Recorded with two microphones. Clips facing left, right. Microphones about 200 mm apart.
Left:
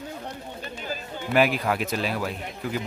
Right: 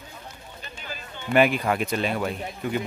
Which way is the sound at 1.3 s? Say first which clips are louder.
Right 2 dB; centre (ahead or behind).